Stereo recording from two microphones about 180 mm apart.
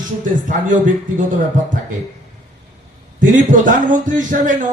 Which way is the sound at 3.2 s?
45° right (ahead or behind).